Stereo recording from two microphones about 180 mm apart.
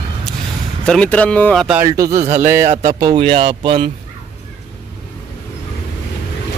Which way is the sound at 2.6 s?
40° right (ahead or behind).